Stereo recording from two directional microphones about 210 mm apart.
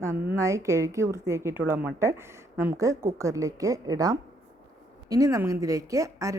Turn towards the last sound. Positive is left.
turn(degrees=-15)  # may be behind; listen again after turning